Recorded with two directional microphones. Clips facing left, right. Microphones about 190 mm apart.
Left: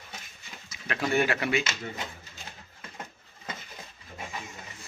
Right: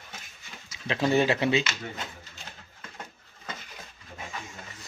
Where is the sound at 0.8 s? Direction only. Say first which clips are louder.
Right 3 dB; 25° right (ahead or behind).